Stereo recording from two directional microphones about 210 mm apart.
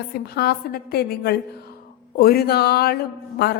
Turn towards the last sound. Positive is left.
turn(degrees=50)  # may be behind; listen again after turning